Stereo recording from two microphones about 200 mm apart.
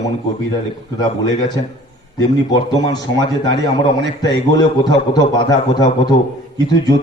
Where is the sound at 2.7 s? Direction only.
20° left (ahead or behind).